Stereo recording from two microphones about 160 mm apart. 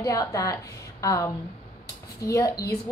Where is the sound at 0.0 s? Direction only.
20° left (ahead or behind).